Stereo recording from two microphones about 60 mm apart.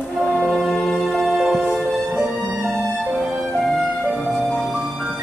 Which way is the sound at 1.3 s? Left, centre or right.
Centre.